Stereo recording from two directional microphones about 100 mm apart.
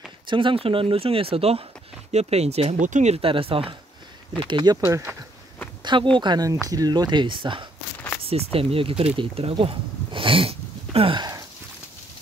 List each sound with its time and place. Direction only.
0.3 s speech: 55° right (ahead or behind); by 1.6 s 75° right (ahead or behind)
2.1 s speech: 90° right; by 3.6 s 65° right (ahead or behind)
4.4 s speech: 55° right (ahead or behind)
4.7 s speech: 25° right (ahead or behind)
6.1 s speech: 45° right (ahead or behind)
8.2 s speech: 75° right (ahead or behind)
11.1 s a sound: 40° right (ahead or behind)